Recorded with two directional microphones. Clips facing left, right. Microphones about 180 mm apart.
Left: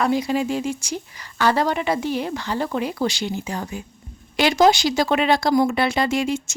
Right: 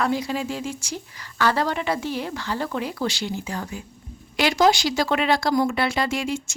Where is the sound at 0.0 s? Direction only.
15° left (ahead or behind).